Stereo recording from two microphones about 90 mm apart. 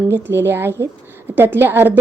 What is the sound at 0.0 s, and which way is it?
A woman's voice, 25° right (ahead or behind).